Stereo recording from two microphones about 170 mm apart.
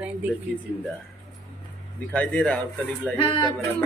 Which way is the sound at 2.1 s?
5° left (ahead or behind).